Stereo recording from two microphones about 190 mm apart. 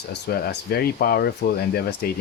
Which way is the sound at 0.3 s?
50° left (ahead or behind).